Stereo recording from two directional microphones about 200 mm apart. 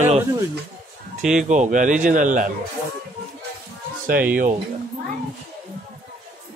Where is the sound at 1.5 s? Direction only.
40° right (ahead or behind).